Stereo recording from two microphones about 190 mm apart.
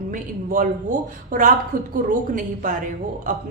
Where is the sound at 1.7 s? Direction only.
45° right (ahead or behind).